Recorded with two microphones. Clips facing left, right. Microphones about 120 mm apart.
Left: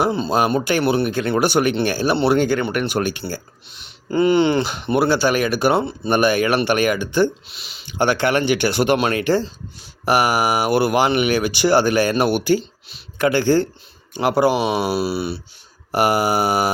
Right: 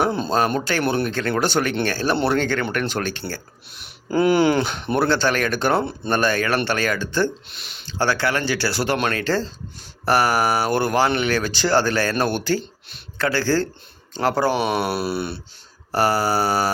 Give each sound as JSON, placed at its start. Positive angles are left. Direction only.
{"t": 0.0, "sound": "speech", "side_deg": 5}
{"t": 3.8, "sound": "speech", "side_deg": -5}
{"t": 7.5, "sound": "speech", "side_deg": 5}
{"t": 7.9, "sound": "speech", "side_deg": 20}
{"t": 15.9, "sound": "speech", "side_deg": 15}